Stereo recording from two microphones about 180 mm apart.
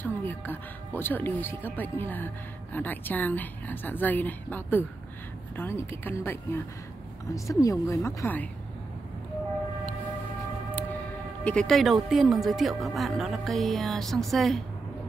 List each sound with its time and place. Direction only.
0.0 s speech: 10° left (ahead or behind)
11.4 s speech: 5° left (ahead or behind)